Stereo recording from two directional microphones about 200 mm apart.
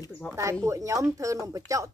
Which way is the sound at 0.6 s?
15° right (ahead or behind).